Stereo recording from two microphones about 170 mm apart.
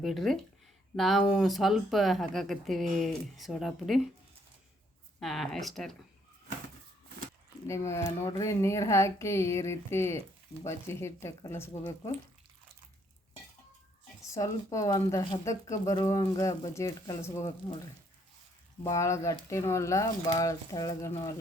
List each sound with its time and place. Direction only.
0.0 s speech: centre (ahead or behind)
5.2 s speech: centre (ahead or behind)
7.7 s speech: 15° left (ahead or behind)
14.3 s speech: 20° left (ahead or behind)
18.8 s speech: 15° left (ahead or behind)